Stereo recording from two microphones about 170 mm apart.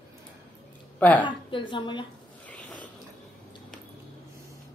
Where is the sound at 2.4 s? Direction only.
10° left (ahead or behind).